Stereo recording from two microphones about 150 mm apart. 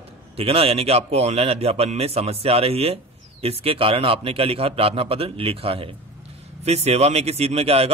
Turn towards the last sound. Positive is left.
turn(degrees=-40)  # may be behind; listen again after turning